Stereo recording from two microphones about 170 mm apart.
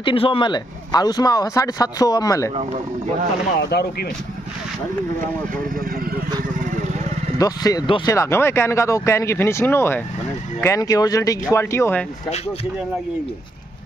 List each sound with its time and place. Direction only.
0.0 s speech: 30° left (ahead or behind)
3.5 s speech: 70° left (ahead or behind)
5.8 s speech: 60° right (ahead or behind)
7.3 s speech: 20° left (ahead or behind)
8.1 s speech: 15° left (ahead or behind)